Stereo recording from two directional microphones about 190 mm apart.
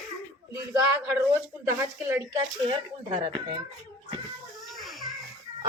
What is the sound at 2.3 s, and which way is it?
Speech, 25° right (ahead or behind).